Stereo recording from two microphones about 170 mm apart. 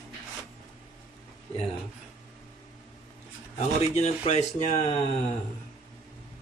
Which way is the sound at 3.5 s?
40° left (ahead or behind).